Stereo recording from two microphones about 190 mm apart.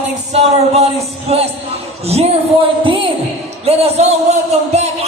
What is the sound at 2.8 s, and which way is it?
A man's voice, 25° right (ahead or behind).